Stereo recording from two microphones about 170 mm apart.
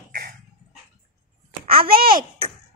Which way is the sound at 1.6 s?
30° right (ahead or behind).